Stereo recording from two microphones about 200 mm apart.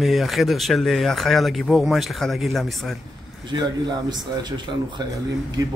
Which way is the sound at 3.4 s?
20° right (ahead or behind).